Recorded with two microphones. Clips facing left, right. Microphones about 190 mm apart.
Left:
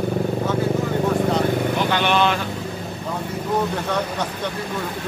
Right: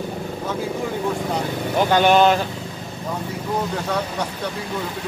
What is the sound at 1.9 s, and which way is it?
Speech, 40° right (ahead or behind).